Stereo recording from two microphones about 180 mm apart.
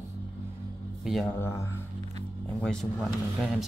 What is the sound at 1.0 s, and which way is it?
Speech, centre (ahead or behind).